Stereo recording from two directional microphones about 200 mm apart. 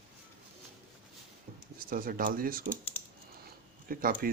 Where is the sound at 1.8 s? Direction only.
45° right (ahead or behind).